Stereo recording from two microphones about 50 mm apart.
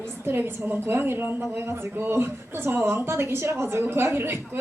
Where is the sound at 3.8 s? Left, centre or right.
Right.